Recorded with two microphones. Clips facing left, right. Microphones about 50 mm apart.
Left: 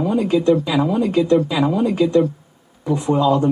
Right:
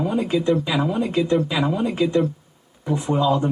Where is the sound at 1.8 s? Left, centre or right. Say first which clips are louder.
Left 6 dB; centre.